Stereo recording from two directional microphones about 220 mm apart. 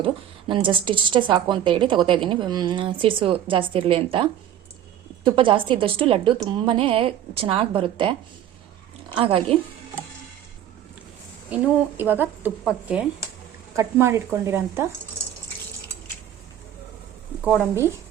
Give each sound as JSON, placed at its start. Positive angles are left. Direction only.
{"t": 0.0, "sound": "a woman's voice", "side_deg": -25}
{"t": 9.1, "sound": "a woman's voice", "side_deg": -25}
{"t": 11.5, "sound": "a woman's voice", "side_deg": -10}